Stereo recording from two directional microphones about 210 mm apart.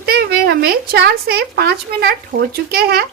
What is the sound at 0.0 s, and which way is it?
Speech, 50° right (ahead or behind).